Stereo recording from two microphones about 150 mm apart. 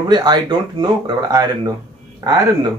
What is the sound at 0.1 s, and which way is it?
Speech, 30° right (ahead or behind).